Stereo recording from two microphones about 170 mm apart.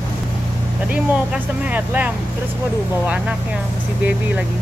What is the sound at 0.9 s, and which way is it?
Speech, 5° right (ahead or behind).